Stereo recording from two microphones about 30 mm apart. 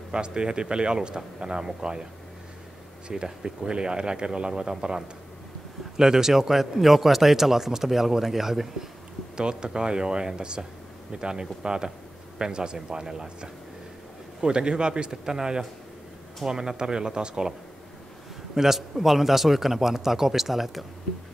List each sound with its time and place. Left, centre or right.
0.1 s speech: right
3.3 s speech: right
9.4 s a man's voice: right
18.5 s speech: centre